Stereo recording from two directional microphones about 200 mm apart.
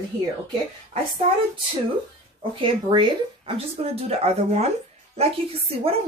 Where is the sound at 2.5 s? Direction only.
25° right (ahead or behind).